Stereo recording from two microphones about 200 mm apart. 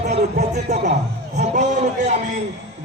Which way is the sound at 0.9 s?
35° right (ahead or behind).